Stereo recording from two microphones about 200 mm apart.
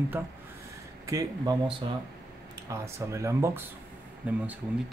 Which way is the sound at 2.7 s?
15° right (ahead or behind).